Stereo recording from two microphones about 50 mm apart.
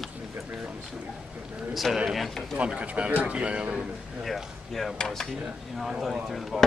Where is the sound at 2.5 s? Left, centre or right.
Right.